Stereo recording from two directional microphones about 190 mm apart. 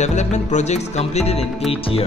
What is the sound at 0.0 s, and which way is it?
Music, 40° left (ahead or behind).